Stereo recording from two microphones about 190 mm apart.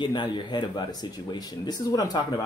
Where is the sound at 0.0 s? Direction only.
25° left (ahead or behind).